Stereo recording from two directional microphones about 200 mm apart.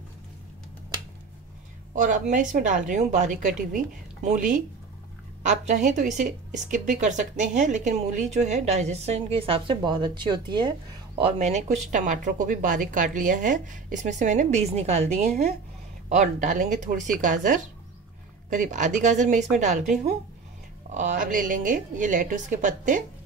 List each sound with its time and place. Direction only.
2.0 s speech: 40° right (ahead or behind)
16.1 s speech: 35° right (ahead or behind)
20.9 s speech: 35° right (ahead or behind)